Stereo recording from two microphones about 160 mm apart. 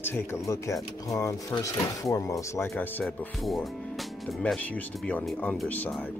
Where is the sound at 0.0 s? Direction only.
15° left (ahead or behind).